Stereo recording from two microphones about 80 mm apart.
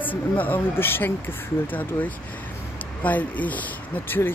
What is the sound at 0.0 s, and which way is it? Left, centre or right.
Speech, left.